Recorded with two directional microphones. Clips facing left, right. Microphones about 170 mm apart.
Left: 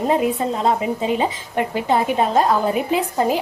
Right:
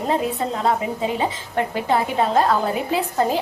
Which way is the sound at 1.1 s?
20° left (ahead or behind).